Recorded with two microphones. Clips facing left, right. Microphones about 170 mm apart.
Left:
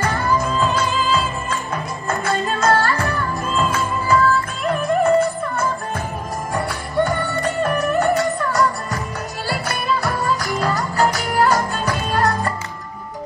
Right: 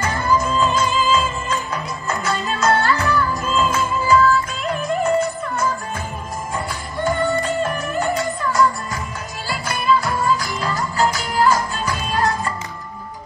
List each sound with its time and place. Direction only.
0.4 s music: 60° left (ahead or behind)